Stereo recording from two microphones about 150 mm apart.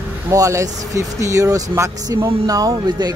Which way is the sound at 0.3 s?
20° right (ahead or behind).